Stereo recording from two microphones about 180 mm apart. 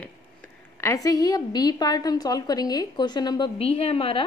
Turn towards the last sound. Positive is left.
turn(degrees=30)  # may be behind; listen again after turning